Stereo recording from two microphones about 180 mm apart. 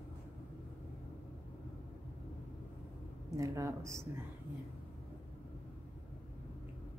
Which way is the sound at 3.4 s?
15° right (ahead or behind).